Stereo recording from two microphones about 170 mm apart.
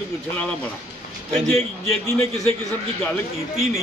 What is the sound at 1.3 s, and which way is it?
Speech, 15° left (ahead or behind).